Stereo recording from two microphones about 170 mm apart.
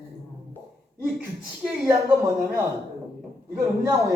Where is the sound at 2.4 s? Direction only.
15° right (ahead or behind).